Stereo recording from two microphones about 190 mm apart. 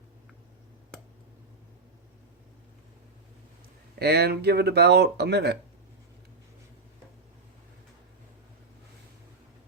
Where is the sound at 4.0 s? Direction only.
55° right (ahead or behind).